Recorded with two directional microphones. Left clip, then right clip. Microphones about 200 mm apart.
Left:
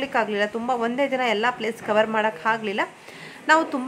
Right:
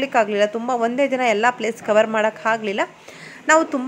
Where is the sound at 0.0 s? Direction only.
15° right (ahead or behind).